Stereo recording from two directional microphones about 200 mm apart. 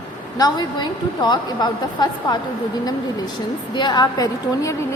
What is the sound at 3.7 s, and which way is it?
A woman's voice, 20° left (ahead or behind).